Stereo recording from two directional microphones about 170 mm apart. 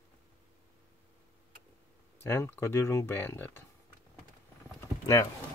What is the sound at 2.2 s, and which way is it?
Speech, 15° left (ahead or behind).